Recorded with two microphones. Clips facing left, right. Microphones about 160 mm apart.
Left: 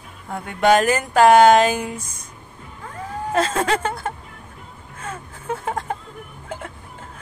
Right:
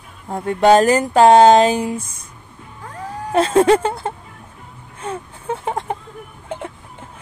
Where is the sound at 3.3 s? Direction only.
30° right (ahead or behind).